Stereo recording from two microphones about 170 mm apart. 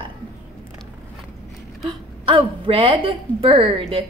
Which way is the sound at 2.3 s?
30° right (ahead or behind).